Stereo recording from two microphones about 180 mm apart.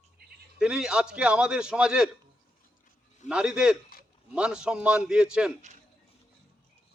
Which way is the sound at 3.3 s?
5° right (ahead or behind).